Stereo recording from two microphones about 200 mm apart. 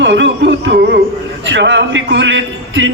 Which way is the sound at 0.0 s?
60° right (ahead or behind).